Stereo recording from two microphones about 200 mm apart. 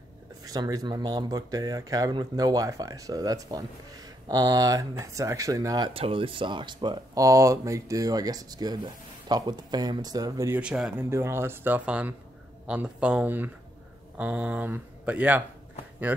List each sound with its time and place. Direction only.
0.4 s speech: 20° right (ahead or behind)
5.9 s speech: 30° right (ahead or behind)
10.6 s speech: 5° right (ahead or behind)